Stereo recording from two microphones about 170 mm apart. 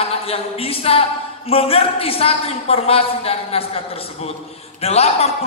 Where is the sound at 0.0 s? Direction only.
35° left (ahead or behind).